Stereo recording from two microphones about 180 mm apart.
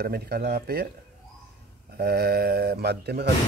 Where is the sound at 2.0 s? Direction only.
60° right (ahead or behind).